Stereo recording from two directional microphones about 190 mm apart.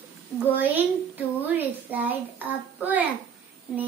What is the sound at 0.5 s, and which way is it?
Child singing, 10° right (ahead or behind).